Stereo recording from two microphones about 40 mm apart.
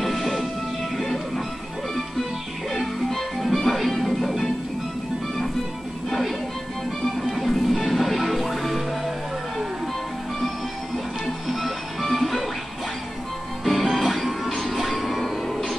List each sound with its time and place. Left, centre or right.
0.0 s music: centre
2.7 s music: centre
6.0 s music: centre
11.2 s music: centre
13.7 s music: centre